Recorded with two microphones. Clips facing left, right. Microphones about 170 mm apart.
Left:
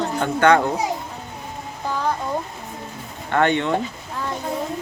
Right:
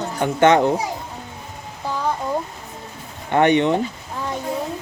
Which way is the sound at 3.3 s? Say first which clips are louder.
Right 3 dB; 20° right (ahead or behind).